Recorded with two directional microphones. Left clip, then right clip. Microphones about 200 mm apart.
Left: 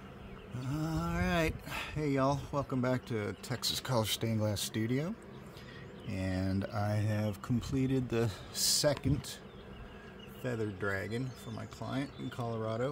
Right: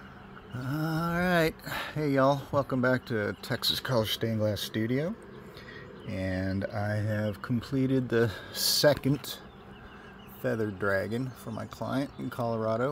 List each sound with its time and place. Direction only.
0.6 s speech: 20° right (ahead or behind)
10.4 s speech: 25° right (ahead or behind)